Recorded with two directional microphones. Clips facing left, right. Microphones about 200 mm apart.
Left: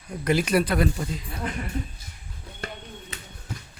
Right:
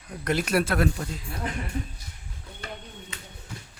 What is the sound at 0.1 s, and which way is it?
Speech, centre (ahead or behind).